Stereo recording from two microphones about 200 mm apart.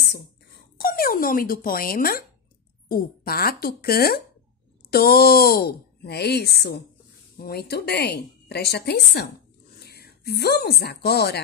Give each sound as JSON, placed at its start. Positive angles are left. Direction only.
{"t": 0.7, "sound": "a woman's voice", "side_deg": 50}